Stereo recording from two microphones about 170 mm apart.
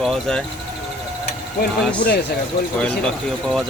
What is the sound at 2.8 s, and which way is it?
Speech, 5° left (ahead or behind).